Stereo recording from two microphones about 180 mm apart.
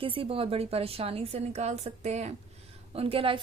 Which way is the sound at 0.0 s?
30° right (ahead or behind).